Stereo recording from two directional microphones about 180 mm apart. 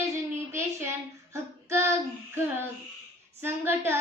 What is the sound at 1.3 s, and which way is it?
Female singing, 15° right (ahead or behind).